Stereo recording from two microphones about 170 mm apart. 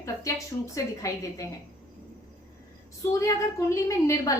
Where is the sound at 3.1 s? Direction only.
20° left (ahead or behind).